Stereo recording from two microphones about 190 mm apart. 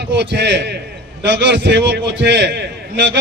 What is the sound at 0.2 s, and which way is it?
A man's voice, 65° right (ahead or behind).